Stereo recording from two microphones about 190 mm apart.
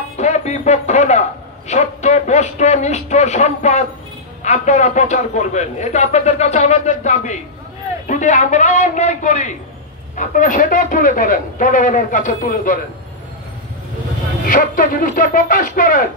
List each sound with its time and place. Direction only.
0.2 s a man's voice: 35° left (ahead or behind)
14.4 s a man's voice: 45° left (ahead or behind)